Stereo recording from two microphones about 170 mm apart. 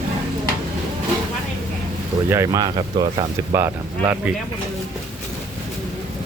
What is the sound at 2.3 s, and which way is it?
Speech, 20° right (ahead or behind).